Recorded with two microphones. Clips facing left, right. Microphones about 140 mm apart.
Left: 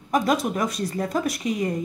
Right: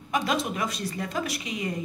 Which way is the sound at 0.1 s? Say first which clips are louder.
Left 5 dB; 45° left (ahead or behind).